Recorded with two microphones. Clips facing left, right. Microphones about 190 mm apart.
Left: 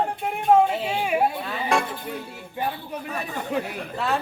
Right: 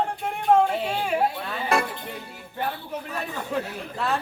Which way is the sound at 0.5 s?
10° left (ahead or behind).